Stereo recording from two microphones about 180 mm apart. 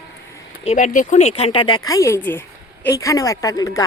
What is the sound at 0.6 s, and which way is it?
Speech, 45° left (ahead or behind).